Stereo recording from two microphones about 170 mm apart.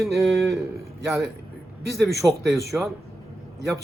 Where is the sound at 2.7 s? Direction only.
5° right (ahead or behind).